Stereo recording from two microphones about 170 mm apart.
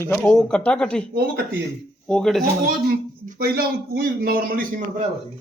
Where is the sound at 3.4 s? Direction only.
65° right (ahead or behind).